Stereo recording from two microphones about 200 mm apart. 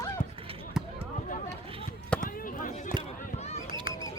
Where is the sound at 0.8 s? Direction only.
5° right (ahead or behind).